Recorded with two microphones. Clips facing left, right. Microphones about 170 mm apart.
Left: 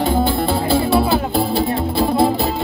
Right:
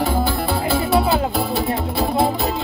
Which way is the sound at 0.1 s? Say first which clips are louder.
Left 3 dB; 25° left (ahead or behind).